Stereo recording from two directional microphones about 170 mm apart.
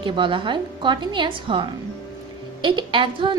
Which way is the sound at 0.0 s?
30° right (ahead or behind).